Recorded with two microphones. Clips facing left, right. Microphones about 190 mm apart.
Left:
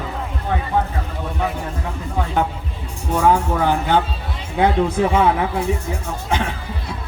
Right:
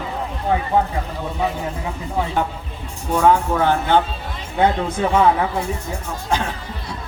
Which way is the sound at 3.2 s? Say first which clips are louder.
Right 1 dB; 10° left (ahead or behind).